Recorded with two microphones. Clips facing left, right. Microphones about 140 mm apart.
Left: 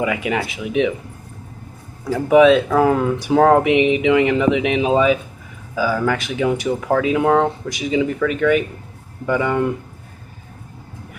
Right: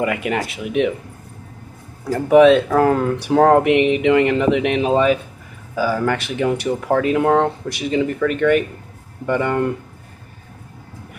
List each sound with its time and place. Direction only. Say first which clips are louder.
0.0 s speech: even; centre (ahead or behind)
2.1 s speech: right 1 dB; centre (ahead or behind)